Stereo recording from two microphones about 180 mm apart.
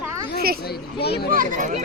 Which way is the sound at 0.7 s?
65° left (ahead or behind).